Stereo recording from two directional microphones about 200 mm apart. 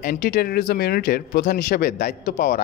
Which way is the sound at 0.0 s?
45° left (ahead or behind).